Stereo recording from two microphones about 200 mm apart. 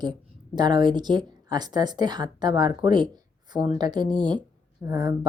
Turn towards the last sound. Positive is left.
turn(degrees=-20)  # may be behind; listen again after turning